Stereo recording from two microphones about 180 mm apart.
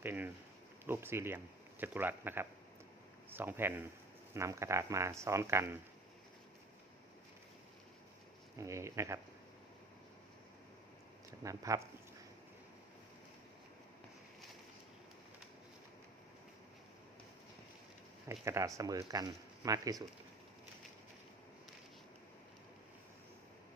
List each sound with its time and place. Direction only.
0.0 s a sound: 10° right (ahead or behind)
0.9 s speech: 15° right (ahead or behind)
8.5 s speech: 15° right (ahead or behind)
11.3 s speech: 15° right (ahead or behind)
18.4 s speech: 15° right (ahead or behind)